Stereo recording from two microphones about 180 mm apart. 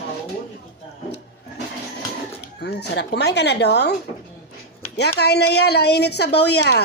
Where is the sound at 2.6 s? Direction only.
65° left (ahead or behind).